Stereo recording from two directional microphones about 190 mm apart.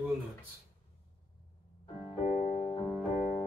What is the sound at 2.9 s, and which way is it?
Music, 5° right (ahead or behind).